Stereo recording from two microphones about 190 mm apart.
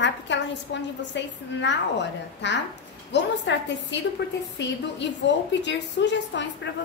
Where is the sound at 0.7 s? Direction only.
65° left (ahead or behind).